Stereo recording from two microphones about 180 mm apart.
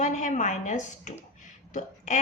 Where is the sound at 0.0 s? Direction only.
45° left (ahead or behind).